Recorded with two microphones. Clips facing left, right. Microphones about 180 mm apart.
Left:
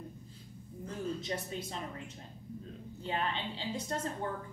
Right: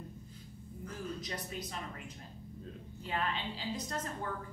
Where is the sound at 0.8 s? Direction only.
25° left (ahead or behind).